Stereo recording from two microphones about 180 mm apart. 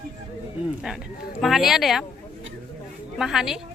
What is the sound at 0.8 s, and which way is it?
Speech, 5° right (ahead or behind).